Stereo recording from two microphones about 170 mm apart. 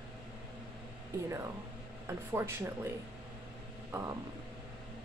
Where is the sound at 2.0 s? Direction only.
15° right (ahead or behind).